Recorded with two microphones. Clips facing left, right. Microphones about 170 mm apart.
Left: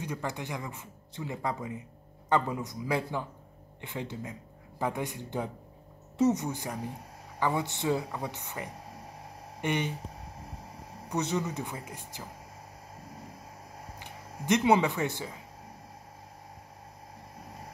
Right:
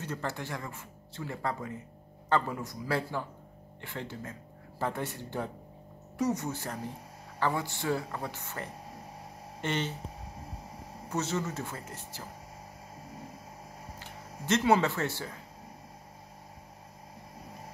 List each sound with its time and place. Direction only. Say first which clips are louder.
0.0 s speech: left 1 dB; 15° left (ahead or behind)
11.1 s speech: left 2 dB; 15° left (ahead or behind)
13.9 s speech: left 1 dB; 15° left (ahead or behind)